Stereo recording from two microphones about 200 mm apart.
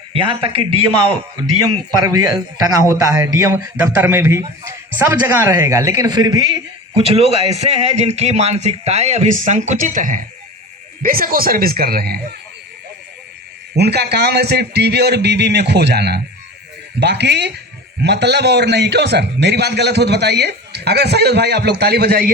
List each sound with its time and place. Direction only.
0.1 s a man's voice: 25° right (ahead or behind)
1.7 s a man's voice: 20° right (ahead or behind); by 12.2 s 50° right (ahead or behind)
13.7 s a man's voice: 55° right (ahead or behind)